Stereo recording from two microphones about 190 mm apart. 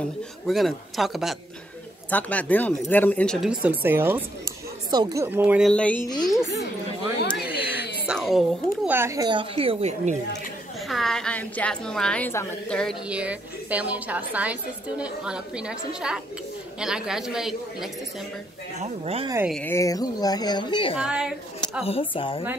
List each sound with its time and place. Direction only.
0.5 s a woman's voice: centre (ahead or behind)
5.7 s a woman's voice: 5° left (ahead or behind)
7.3 s a sound: 5° right (ahead or behind)
8.1 s speech: centre (ahead or behind)
8.9 s a woman's voice: 15° right (ahead or behind); by 10.1 s 35° right (ahead or behind)
10.9 s a woman's voice: centre (ahead or behind)
13.1 s a woman's voice: 5° right (ahead or behind)
18.8 s speech: 35° right (ahead or behind)
19.6 s speech: 15° left (ahead or behind)
21.0 s a woman's voice: 5° right (ahead or behind)
21.8 s speech: 30° left (ahead or behind)